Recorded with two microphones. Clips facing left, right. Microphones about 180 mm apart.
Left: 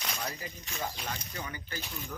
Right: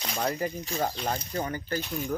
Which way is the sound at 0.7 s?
40° right (ahead or behind).